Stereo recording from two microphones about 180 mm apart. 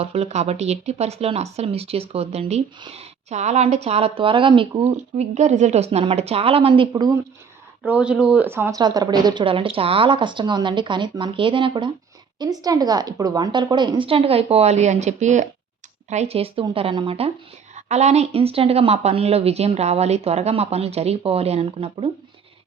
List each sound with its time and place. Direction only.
0.0 s speech: 35° right (ahead or behind)
6.9 s speech: 20° right (ahead or behind)
7.9 s speech: 5° right (ahead or behind); by 22.1 s 35° right (ahead or behind)